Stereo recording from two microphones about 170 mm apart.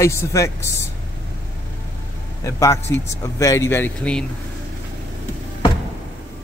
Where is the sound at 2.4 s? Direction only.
15° left (ahead or behind).